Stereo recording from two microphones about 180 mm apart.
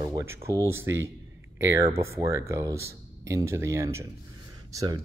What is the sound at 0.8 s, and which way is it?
Speech, 90° right.